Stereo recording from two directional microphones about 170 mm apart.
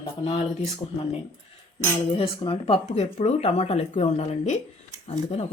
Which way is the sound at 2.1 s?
30° left (ahead or behind).